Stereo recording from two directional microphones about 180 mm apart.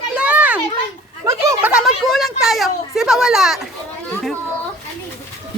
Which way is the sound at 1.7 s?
Centre (ahead or behind).